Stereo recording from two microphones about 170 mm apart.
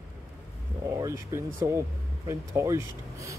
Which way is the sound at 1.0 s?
15° right (ahead or behind).